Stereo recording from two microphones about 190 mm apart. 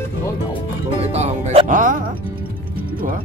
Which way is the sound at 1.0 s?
35° right (ahead or behind).